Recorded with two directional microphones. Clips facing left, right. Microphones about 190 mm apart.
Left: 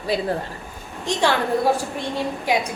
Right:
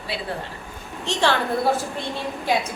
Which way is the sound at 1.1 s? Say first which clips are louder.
Left 1 dB; 15° left (ahead or behind).